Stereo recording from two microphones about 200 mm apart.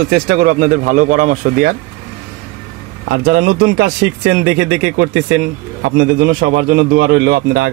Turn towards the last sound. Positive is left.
turn(degrees=-50)  # may be behind; listen again after turning